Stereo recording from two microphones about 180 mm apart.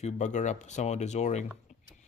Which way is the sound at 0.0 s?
40° left (ahead or behind).